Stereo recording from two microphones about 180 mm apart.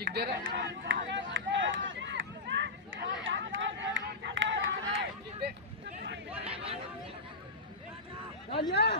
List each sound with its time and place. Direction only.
0.0 s run: 65° right (ahead or behind); by 5.1 s 90° right
6.3 s chatter: 35° right (ahead or behind)
8.5 s a sound: 65° left (ahead or behind)